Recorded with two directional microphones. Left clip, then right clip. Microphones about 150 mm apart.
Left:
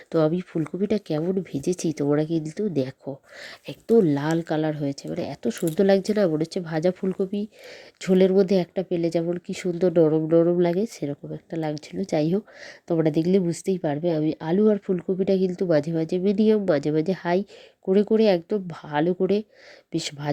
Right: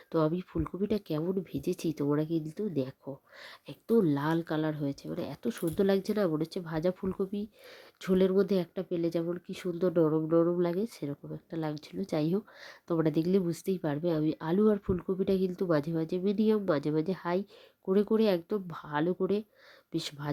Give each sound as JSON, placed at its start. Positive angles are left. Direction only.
{"t": 0.1, "sound": "speech", "side_deg": 15}